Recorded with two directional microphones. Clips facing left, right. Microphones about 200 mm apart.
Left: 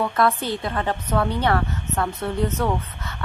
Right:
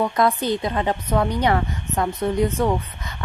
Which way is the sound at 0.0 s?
15° right (ahead or behind).